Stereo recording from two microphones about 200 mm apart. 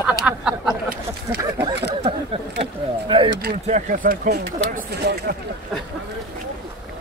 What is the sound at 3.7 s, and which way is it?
Speech, 40° right (ahead or behind).